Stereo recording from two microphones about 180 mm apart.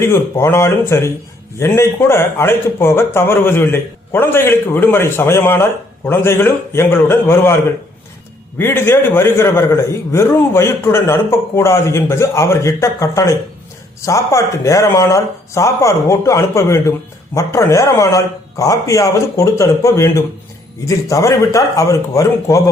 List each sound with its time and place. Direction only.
0.0 s a man's voice: 15° left (ahead or behind)